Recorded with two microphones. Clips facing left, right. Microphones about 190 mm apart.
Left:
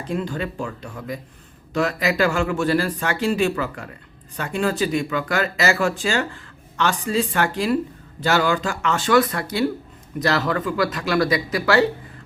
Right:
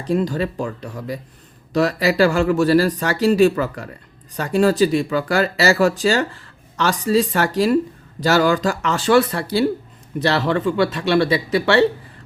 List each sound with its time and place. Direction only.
0.0 s speech: 35° right (ahead or behind)